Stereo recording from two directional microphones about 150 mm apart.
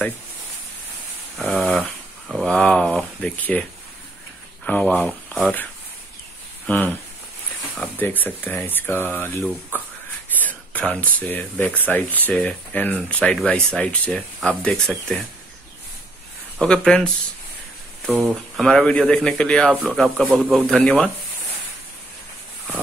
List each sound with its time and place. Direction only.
1.7 s a sound: centre (ahead or behind)
4.6 s speech: 5° left (ahead or behind)
8.0 s speech: 10° left (ahead or behind)
16.5 s speech: 5° left (ahead or behind)